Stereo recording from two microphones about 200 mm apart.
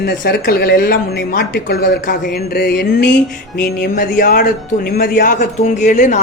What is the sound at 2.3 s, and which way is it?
Speech, 50° left (ahead or behind).